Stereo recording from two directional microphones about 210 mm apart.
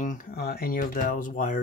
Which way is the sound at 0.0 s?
40° left (ahead or behind).